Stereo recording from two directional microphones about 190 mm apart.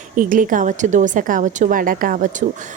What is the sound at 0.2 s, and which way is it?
A woman's voice, 45° right (ahead or behind).